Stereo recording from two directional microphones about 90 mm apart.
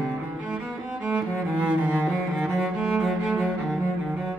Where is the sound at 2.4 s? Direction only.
5° right (ahead or behind).